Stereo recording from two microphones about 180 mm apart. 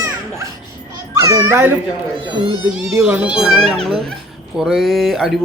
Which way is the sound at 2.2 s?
25° right (ahead or behind).